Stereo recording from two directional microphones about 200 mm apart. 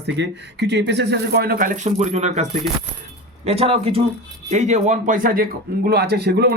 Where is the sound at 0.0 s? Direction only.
60° right (ahead or behind).